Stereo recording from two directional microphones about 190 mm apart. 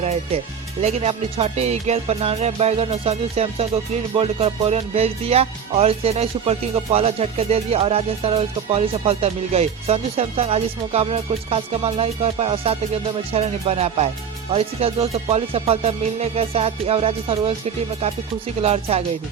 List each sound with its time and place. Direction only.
0.8 s music: 35° right (ahead or behind)